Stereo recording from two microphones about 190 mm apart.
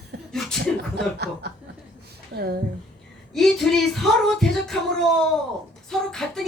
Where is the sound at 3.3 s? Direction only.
Centre (ahead or behind).